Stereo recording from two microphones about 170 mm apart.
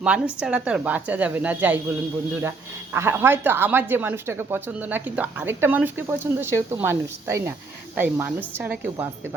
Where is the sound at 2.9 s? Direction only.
15° right (ahead or behind).